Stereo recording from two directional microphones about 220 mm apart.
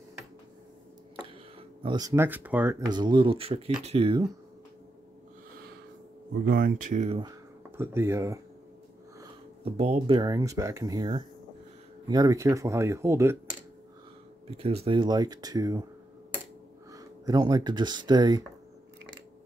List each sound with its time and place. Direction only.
1.8 s speech: 20° right (ahead or behind)
6.4 s speech: 40° right (ahead or behind)
7.2 s speech: 15° right (ahead or behind)
9.2 s speech: 25° right (ahead or behind); by 13.7 s 10° right (ahead or behind)
14.5 s speech: 25° right (ahead or behind)
16.9 s speech: 15° right (ahead or behind)